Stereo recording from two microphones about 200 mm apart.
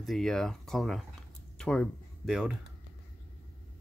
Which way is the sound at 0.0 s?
Centre (ahead or behind).